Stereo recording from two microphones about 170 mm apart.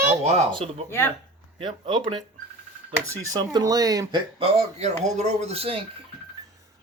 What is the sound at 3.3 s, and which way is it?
Speech, 25° right (ahead or behind).